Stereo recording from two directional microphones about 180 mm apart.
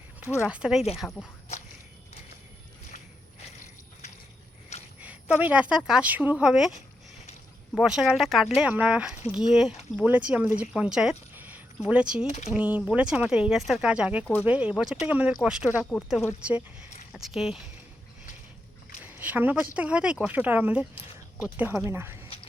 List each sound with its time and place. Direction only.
0.4 s speech: 5° right (ahead or behind)
4.9 s a woman's voice: 10° right (ahead or behind)
7.8 s speech: 5° right (ahead or behind)
11.3 s a sound: 10° right (ahead or behind)
12.3 s speech: 40° left (ahead or behind)
12.5 s speech: 10° right (ahead or behind)
19.0 s speech: 10° right (ahead or behind)